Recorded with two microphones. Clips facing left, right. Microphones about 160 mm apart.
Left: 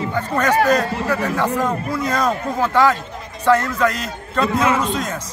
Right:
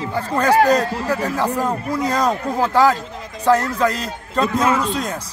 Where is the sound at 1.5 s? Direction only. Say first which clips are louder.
Even; 10° right (ahead or behind).